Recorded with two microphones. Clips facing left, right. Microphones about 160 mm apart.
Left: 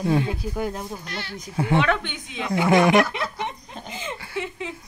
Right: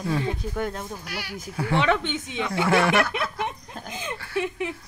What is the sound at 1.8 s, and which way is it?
Speech, 25° right (ahead or behind).